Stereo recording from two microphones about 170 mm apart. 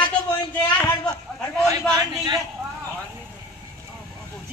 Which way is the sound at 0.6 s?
15° left (ahead or behind).